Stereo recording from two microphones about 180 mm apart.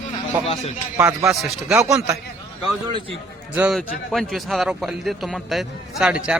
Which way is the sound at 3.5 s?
5° right (ahead or behind).